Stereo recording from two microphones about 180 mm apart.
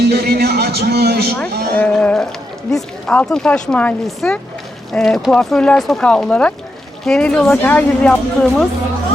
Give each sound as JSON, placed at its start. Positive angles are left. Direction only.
{"t": 0.1, "sound": "a man's voice", "side_deg": -60}
{"t": 1.7, "sound": "speech", "side_deg": 5}